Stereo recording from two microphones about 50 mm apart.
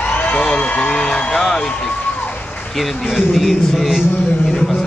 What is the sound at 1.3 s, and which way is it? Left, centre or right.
A man's voice, centre.